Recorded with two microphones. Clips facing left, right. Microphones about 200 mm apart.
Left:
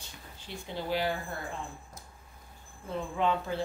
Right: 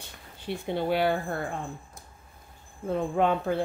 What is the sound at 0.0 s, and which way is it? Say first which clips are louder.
Speech: right 8 dB; 60° right (ahead or behind).